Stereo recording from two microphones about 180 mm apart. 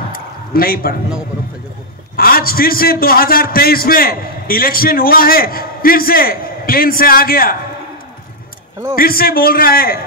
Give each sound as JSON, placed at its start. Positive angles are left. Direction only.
{"t": 0.1, "sound": "a sound", "side_deg": 55}
{"t": 2.1, "sound": "a man's voice", "side_deg": 55}
{"t": 8.9, "sound": "a man's voice", "side_deg": 55}